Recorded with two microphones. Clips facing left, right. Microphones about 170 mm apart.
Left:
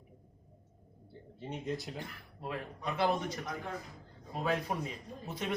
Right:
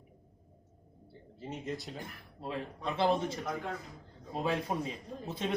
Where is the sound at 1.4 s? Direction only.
Centre (ahead or behind).